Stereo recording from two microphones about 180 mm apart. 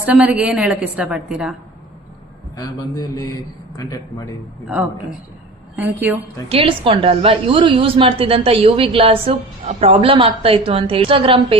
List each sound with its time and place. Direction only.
0.0 s a woman's voice: 5° right (ahead or behind)
2.6 s a man's voice: 20° left (ahead or behind)
5.7 s a woman's voice: 10° right (ahead or behind)
6.5 s a woman's voice: 30° right (ahead or behind)